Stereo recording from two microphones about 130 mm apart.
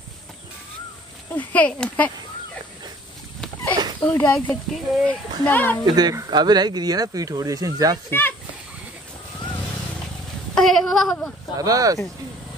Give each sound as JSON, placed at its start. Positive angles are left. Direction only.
{"t": 1.3, "sound": "speech", "side_deg": 10}
{"t": 4.0, "sound": "speech", "side_deg": 10}
{"t": 5.9, "sound": "speech", "side_deg": -30}
{"t": 8.1, "sound": "speech", "side_deg": 15}
{"t": 10.5, "sound": "a sound", "side_deg": 5}
{"t": 11.5, "sound": "speech", "side_deg": -25}